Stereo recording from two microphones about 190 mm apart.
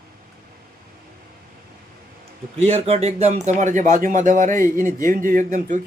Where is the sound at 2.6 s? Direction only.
35° right (ahead or behind).